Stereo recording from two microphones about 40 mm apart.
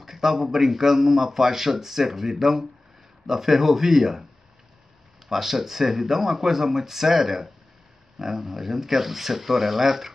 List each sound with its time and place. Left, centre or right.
0.0 s speech: centre
5.3 s speech: centre